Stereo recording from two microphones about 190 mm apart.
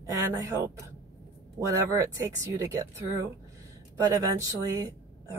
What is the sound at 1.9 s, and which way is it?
Speech, 15° right (ahead or behind).